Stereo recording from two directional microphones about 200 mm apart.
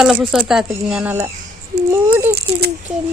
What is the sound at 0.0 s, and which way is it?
Speech, centre (ahead or behind).